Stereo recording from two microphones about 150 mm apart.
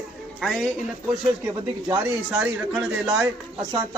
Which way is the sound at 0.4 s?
Centre (ahead or behind).